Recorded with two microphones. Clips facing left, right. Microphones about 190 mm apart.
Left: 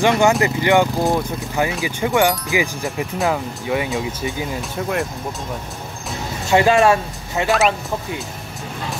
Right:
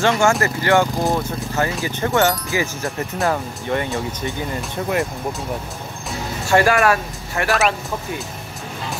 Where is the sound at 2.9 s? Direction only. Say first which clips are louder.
Left 1 dB; centre (ahead or behind).